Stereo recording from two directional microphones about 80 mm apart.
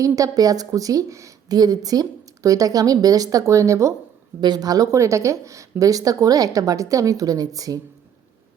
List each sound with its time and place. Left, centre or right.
0.0 s a woman's voice: right
1.5 s a woman's voice: right
4.4 s speech: right
4.9 s a woman's voice: right